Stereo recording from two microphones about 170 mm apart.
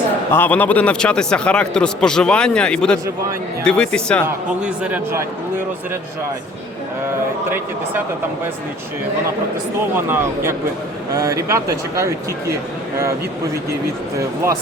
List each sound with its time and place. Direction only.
0.3 s a man's voice: 10° left (ahead or behind)
4.8 s speech: 10° right (ahead or behind)
9.9 s speech: 15° right (ahead or behind)